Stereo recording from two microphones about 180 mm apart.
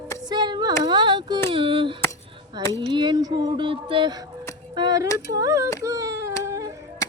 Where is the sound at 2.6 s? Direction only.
15° left (ahead or behind).